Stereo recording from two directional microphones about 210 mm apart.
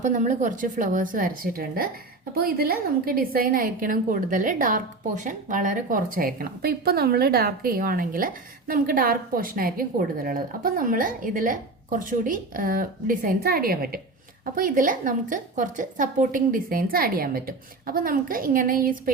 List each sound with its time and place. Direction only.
0.0 s a woman's voice: 35° right (ahead or behind)